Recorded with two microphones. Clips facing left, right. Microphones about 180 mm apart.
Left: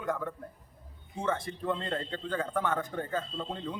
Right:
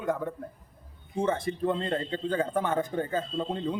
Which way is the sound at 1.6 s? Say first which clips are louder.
Right 5 dB; 20° right (ahead or behind).